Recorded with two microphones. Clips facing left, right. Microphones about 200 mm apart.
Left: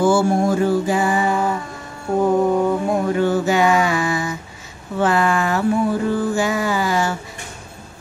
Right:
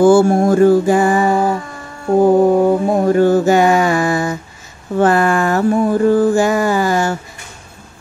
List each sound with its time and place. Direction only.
0.0 s music: 50° right (ahead or behind)
2.1 s mantra: 35° right (ahead or behind)
4.9 s a sound: 45° right (ahead or behind)